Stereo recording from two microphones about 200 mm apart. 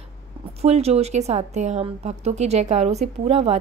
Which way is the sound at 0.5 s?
30° right (ahead or behind).